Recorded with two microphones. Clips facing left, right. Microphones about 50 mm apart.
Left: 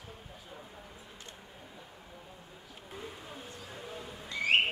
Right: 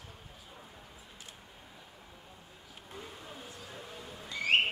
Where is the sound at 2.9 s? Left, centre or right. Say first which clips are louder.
Left 2 dB; centre.